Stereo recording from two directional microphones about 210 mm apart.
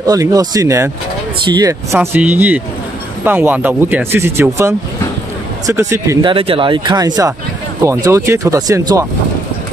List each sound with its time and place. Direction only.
0.0 s speech: 15° right (ahead or behind)
6.3 s speech: 25° right (ahead or behind)